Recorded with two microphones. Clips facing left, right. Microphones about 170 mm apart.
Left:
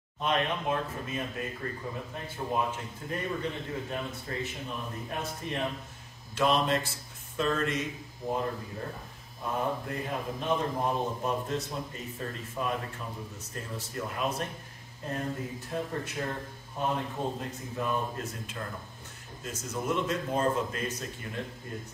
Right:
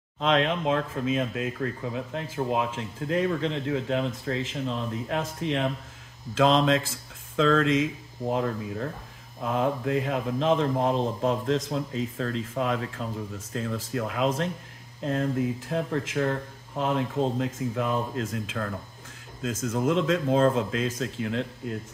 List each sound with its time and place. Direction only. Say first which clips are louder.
0.2 s speech: right 6 dB; 90° right